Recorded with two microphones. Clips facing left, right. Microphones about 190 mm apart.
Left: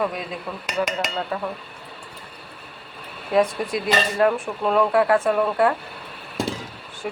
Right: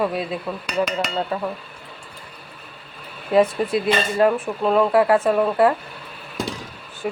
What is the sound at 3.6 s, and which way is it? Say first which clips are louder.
Speech: right 4 dB; 30° right (ahead or behind).